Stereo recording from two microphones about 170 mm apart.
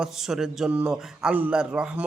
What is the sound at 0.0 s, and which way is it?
A man's voice, 5° right (ahead or behind).